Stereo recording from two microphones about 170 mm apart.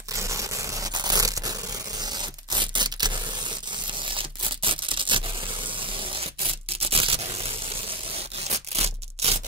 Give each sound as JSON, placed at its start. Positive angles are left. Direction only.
{"t": 0.1, "sound": "tearing", "side_deg": -20}
{"t": 2.0, "sound": "scissors", "side_deg": -25}
{"t": 4.1, "sound": "tearing", "side_deg": -30}
{"t": 6.1, "sound": "a sound", "side_deg": -35}